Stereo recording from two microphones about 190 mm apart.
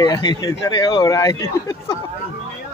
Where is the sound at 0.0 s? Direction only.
20° left (ahead or behind).